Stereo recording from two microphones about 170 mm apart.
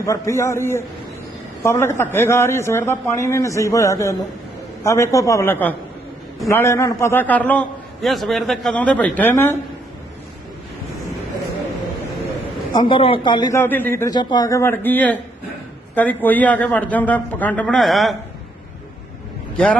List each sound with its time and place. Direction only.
0.0 s a man's voice: 15° left (ahead or behind)
12.7 s a man's voice: 30° left (ahead or behind)
13.6 s a man's voice: 10° left (ahead or behind)
19.5 s a man's voice: 5° left (ahead or behind)